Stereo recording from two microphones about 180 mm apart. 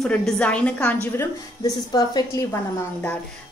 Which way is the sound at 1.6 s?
25° left (ahead or behind).